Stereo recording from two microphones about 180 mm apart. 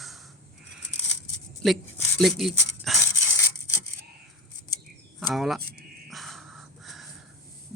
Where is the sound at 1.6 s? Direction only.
5° left (ahead or behind).